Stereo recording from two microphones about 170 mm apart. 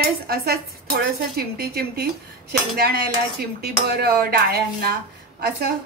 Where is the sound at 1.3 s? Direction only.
70° right (ahead or behind).